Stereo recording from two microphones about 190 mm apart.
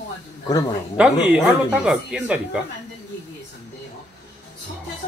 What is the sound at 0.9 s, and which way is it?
Speech, 5° right (ahead or behind).